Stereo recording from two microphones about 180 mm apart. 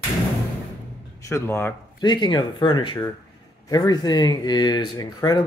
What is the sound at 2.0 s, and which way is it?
A man's voice, 25° left (ahead or behind).